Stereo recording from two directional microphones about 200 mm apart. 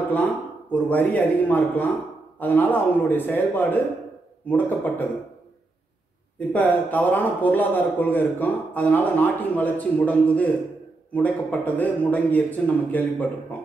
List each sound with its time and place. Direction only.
0.1 s a man's voice: 5° left (ahead or behind)
6.5 s a man's voice: 10° left (ahead or behind)